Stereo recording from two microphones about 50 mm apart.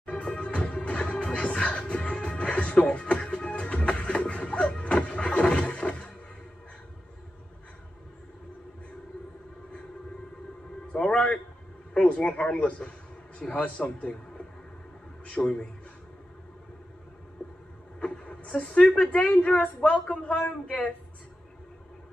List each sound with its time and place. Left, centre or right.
0.1 s music: centre
10.9 s a sound: centre
12.5 s a woman's voice: centre
15.2 s a man's voice: left
18.0 s a sound: centre
18.9 s a woman's voice: left